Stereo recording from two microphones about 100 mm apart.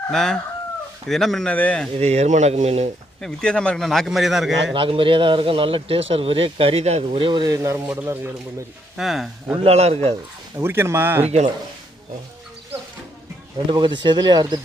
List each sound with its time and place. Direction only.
0.1 s a man's voice: 5° left (ahead or behind)
2.0 s speech: 90° right
3.2 s a man's voice: 10° left (ahead or behind)
4.7 s speech: 60° right (ahead or behind)
7.4 s speech: 30° right (ahead or behind)
7.9 s speech: 20° right (ahead or behind)
9.0 s a man's voice: centre (ahead or behind)
9.6 s speech: 90° right
10.6 s speech: 25° right (ahead or behind)
13.7 s speech: 50° right (ahead or behind)